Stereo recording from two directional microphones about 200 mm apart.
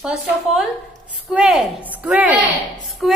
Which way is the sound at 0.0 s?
5° right (ahead or behind).